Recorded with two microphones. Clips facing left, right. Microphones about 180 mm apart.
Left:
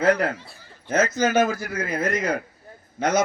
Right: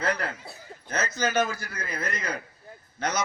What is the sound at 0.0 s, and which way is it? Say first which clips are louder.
A man's voice: left 9 dB; 50° left (ahead or behind).